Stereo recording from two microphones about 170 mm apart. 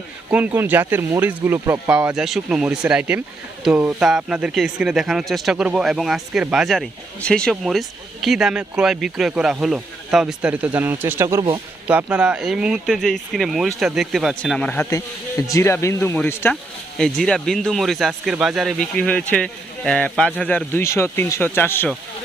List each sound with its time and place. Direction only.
0.3 s speech: 10° right (ahead or behind)
14.8 s speech: 20° left (ahead or behind)